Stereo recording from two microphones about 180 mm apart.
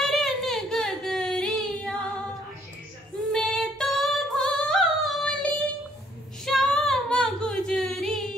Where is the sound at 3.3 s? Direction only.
5° left (ahead or behind).